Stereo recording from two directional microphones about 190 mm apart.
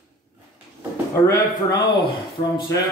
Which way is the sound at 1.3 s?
20° left (ahead or behind).